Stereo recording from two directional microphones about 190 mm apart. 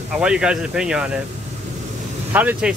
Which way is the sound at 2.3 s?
10° right (ahead or behind).